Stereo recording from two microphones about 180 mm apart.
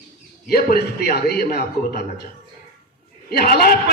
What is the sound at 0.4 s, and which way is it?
A man's voice, 60° left (ahead or behind).